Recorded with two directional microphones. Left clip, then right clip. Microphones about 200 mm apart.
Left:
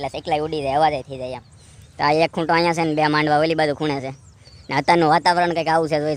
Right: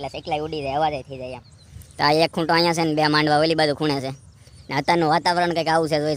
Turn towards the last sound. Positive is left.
turn(degrees=-5)  # may be behind; listen again after turning